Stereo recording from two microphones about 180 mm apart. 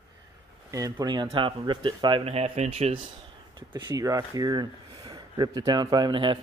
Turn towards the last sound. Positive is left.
turn(degrees=-25)  # may be behind; listen again after turning